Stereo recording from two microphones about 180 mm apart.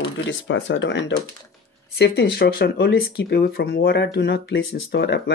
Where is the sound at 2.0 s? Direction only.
65° left (ahead or behind).